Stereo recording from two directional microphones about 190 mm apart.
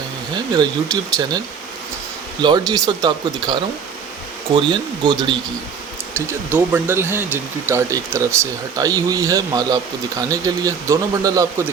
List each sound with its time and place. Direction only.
0.5 s speech: 20° right (ahead or behind)
2.4 s speech: 20° right (ahead or behind)
6.1 s speech: 10° right (ahead or behind)